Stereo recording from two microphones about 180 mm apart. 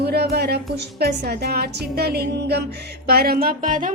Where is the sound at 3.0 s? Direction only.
60° right (ahead or behind).